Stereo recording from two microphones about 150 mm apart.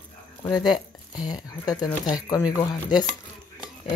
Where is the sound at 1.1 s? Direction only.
25° left (ahead or behind).